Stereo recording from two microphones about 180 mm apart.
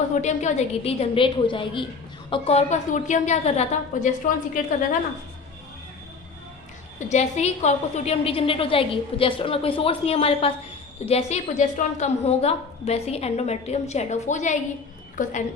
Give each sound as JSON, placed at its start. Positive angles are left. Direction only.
{"t": 0.1, "sound": "a woman's voice", "side_deg": 40}
{"t": 7.1, "sound": "a woman's voice", "side_deg": 40}